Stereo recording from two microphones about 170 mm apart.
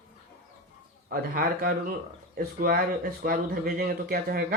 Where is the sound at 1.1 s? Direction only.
60° right (ahead or behind).